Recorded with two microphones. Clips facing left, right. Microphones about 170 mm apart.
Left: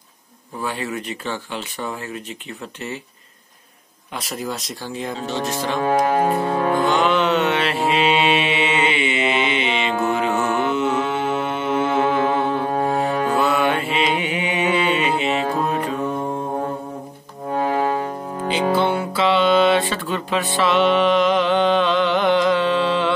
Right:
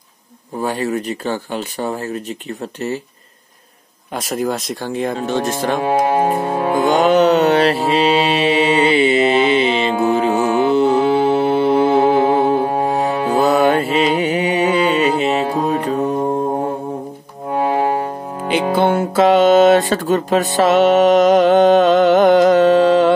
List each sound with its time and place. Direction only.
0.6 s speech: 40° right (ahead or behind)
4.1 s speech: 45° right (ahead or behind)
5.8 s music: 15° right (ahead or behind)
6.9 s mantra: 40° right (ahead or behind)
13.2 s music: 40° right (ahead or behind)
17.6 s music: 20° right (ahead or behind)
18.5 s music: 50° right (ahead or behind)